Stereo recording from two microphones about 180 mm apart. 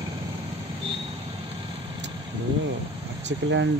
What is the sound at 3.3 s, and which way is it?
Speech, 85° right.